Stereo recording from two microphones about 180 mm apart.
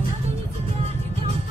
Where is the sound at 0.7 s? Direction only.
35° right (ahead or behind).